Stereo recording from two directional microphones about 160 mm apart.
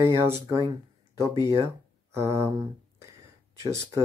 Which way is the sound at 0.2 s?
15° right (ahead or behind).